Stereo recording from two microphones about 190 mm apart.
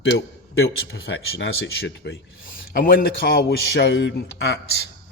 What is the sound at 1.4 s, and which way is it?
Speech, 65° left (ahead or behind).